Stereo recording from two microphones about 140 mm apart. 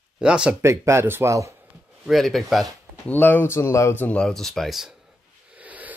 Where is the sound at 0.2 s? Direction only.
5° right (ahead or behind).